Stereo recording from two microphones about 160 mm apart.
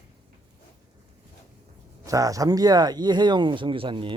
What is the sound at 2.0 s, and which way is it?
Speech, 20° right (ahead or behind).